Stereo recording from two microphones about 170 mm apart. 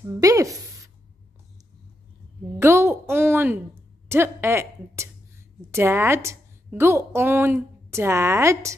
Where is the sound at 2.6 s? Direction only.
15° right (ahead or behind).